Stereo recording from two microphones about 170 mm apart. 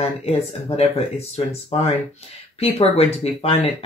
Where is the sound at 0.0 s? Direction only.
35° left (ahead or behind).